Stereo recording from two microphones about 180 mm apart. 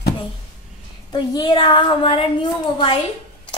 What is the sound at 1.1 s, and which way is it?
Speech, 25° left (ahead or behind).